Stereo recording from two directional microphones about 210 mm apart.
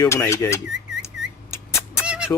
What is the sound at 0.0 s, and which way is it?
Speech, 15° left (ahead or behind).